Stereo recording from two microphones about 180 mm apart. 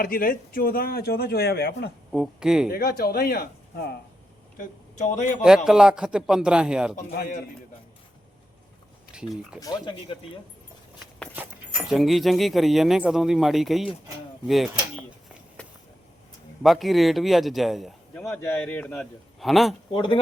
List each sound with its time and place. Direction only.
0.0 s speech: 55° left (ahead or behind)
2.1 s speech: 5° right (ahead or behind)
2.6 s speech: 55° left (ahead or behind)
4.5 s speech: 45° left (ahead or behind)
5.6 s speech: 5° right (ahead or behind)
9.1 s speech: 5° right (ahead or behind)
9.6 s speech: 20° left (ahead or behind)
11.4 s speech: 10° right (ahead or behind)
16.6 s speech: centre (ahead or behind)
18.1 s a man's voice: 15° left (ahead or behind)
19.9 s speech: 25° left (ahead or behind)